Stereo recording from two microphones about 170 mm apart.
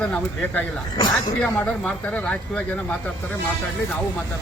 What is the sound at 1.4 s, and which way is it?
A man's voice, 10° left (ahead or behind).